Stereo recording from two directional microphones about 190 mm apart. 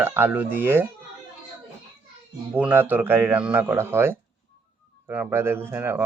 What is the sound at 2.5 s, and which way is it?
Speech, 10° right (ahead or behind).